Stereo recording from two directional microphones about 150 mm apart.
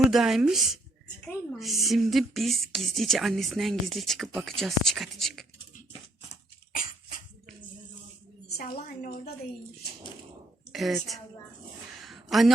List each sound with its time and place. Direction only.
0.1 s a woman's voice: centre (ahead or behind)
8.5 s a woman's voice: 85° left
10.7 s a woman's voice: centre (ahead or behind)
11.9 s a sound: centre (ahead or behind)